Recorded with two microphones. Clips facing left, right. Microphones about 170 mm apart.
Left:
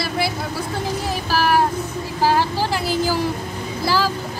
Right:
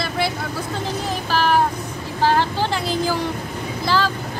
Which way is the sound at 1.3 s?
5° left (ahead or behind).